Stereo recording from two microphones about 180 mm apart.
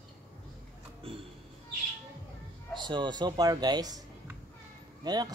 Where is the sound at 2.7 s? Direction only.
25° right (ahead or behind).